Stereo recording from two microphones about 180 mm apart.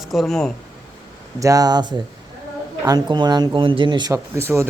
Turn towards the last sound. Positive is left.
turn(degrees=-15)  # may be behind; listen again after turning